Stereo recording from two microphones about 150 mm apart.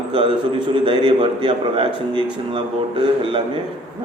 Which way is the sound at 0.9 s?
35° right (ahead or behind).